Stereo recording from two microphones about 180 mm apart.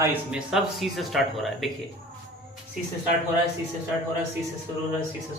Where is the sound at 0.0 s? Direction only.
10° right (ahead or behind).